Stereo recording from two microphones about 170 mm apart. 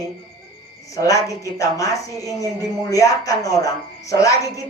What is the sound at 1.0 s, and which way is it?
Speech, 20° left (ahead or behind).